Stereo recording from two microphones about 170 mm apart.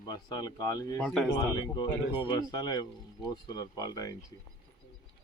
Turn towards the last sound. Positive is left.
turn(degrees=20)  # may be behind; listen again after turning